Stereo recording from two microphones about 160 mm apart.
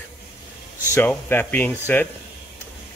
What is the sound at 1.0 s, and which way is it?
Speech, 10° left (ahead or behind).